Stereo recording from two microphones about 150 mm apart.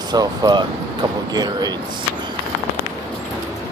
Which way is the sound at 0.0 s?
25° right (ahead or behind).